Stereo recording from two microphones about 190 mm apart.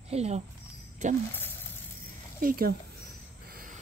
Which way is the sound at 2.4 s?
50° right (ahead or behind).